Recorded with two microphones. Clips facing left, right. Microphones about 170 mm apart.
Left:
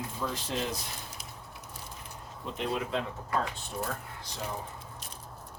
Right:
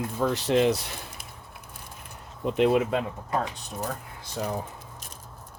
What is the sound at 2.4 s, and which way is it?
Speech, 65° right (ahead or behind).